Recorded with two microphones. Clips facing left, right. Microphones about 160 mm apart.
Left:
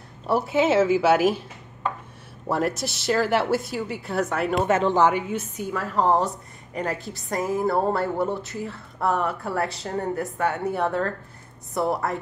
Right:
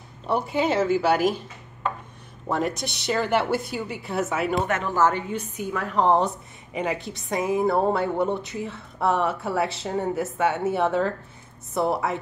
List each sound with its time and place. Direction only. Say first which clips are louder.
0.3 s speech: left 3 dB; centre (ahead or behind)
2.4 s speech: left 1 dB; 5° left (ahead or behind)
4.6 s speech: left 5 dB; 25° left (ahead or behind)
5.0 s a woman's voice: left 1 dB; 10° left (ahead or behind)